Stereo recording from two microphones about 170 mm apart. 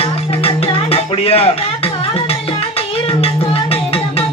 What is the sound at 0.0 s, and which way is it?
Music, 35° left (ahead or behind).